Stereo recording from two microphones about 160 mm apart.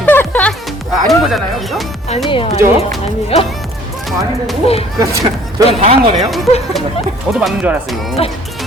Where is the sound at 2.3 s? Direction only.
35° left (ahead or behind).